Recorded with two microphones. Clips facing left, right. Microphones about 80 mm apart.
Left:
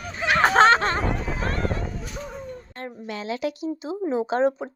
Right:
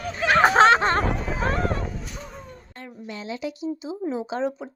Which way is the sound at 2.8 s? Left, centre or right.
Left.